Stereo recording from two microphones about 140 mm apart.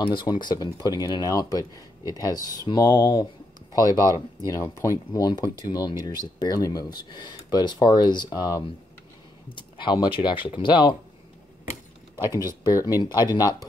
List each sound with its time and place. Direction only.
0.0 s speech: 35° left (ahead or behind)
4.0 s speech: 20° right (ahead or behind)
4.5 s speech: 20° left (ahead or behind)
12.7 s speech: 30° left (ahead or behind)